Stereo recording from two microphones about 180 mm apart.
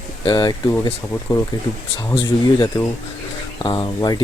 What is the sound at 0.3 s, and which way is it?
Speech, 20° left (ahead or behind).